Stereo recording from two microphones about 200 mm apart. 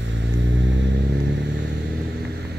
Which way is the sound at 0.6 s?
60° right (ahead or behind).